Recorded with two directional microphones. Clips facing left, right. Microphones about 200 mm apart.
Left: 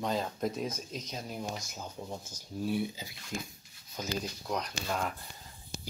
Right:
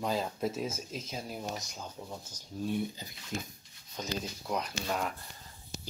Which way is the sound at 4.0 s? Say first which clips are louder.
Left 1 dB; 5° right (ahead or behind).